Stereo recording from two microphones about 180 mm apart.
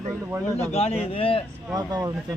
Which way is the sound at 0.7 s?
35° left (ahead or behind).